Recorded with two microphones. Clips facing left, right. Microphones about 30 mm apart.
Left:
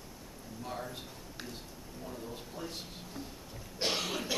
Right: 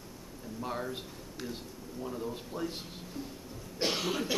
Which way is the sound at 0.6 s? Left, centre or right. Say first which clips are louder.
Right 4 dB; centre.